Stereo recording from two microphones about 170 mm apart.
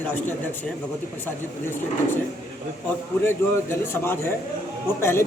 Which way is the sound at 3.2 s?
15° left (ahead or behind).